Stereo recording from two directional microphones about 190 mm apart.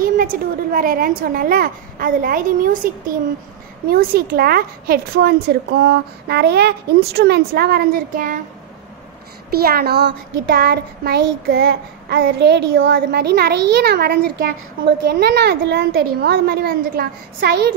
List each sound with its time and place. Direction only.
0.0 s a woman's voice: 50° right (ahead or behind)
3.9 s a woman's voice: 55° right (ahead or behind)
9.5 s a child's voice: 55° right (ahead or behind)